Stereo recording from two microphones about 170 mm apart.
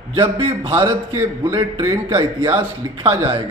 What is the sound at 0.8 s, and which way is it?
Speech, 15° right (ahead or behind).